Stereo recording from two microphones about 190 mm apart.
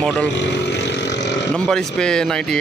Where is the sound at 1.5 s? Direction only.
5° left (ahead or behind).